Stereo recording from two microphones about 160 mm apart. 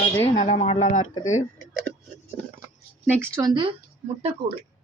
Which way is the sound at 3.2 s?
20° right (ahead or behind).